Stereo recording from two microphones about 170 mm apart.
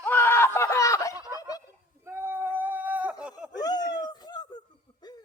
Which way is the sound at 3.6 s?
25° left (ahead or behind).